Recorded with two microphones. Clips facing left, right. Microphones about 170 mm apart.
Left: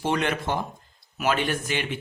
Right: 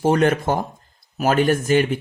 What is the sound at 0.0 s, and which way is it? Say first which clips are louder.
Speech: right 8 dB; 45° right (ahead or behind).